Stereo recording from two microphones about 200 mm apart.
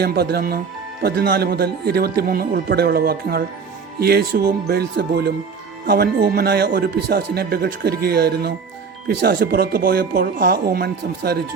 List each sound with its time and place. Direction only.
0.0 s speech: 55° right (ahead or behind)